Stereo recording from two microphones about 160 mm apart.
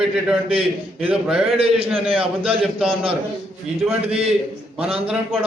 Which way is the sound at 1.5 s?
35° right (ahead or behind).